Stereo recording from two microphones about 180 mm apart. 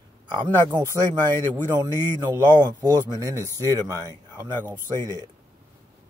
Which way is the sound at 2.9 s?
20° right (ahead or behind).